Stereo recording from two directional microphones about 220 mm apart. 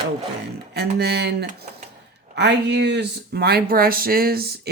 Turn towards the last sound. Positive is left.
turn(degrees=-45)  # may be behind; listen again after turning